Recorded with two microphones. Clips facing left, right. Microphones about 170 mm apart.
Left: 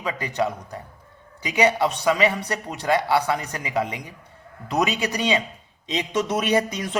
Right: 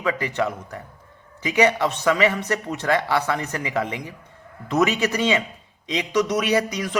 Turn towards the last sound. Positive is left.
turn(degrees=25)  # may be behind; listen again after turning